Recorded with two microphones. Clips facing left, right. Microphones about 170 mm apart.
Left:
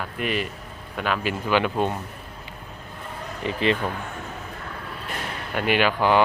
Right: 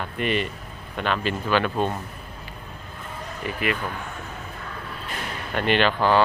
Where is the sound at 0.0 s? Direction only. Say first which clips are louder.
Right 2 dB; 5° left (ahead or behind).